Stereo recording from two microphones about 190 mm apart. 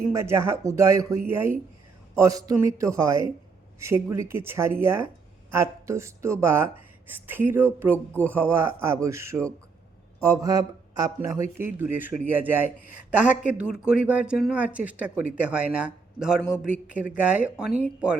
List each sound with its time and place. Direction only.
0.1 s speech: 15° right (ahead or behind)